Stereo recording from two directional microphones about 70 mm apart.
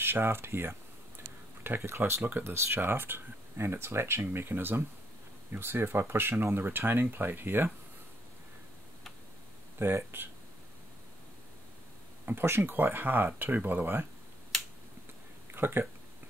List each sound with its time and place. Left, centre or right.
0.0 s speech: right
9.8 s speech: right
12.3 s speech: right
15.5 s speech: right